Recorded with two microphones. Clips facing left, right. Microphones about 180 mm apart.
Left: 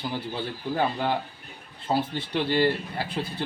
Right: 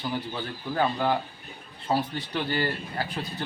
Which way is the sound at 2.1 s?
30° left (ahead or behind).